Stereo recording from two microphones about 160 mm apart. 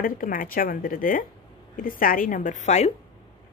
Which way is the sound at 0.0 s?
60° left (ahead or behind).